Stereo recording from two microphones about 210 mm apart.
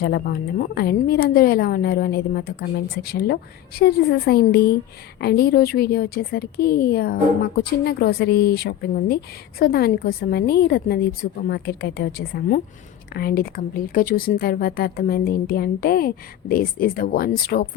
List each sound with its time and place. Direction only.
0.0 s a woman's voice: 50° left (ahead or behind)